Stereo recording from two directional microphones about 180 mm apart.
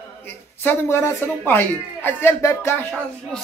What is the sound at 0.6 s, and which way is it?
A man's voice, 10° left (ahead or behind).